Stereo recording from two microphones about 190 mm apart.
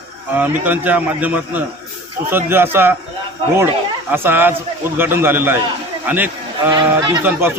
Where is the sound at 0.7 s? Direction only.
10° right (ahead or behind).